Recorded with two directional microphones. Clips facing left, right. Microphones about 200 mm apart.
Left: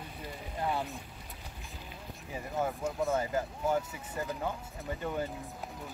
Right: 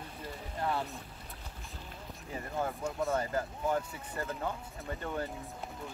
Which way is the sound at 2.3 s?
5° left (ahead or behind).